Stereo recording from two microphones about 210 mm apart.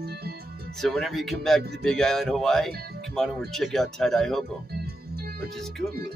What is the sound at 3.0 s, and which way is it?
Speech, centre (ahead or behind).